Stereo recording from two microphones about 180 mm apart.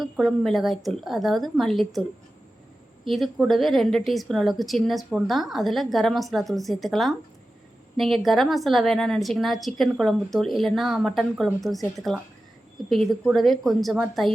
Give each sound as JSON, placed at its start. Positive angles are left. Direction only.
{"t": 0.0, "sound": "a woman's voice", "side_deg": 0}